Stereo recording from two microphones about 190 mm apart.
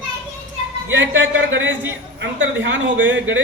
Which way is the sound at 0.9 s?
75° right (ahead or behind).